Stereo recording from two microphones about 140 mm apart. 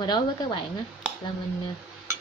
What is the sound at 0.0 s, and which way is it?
Speech, 30° left (ahead or behind).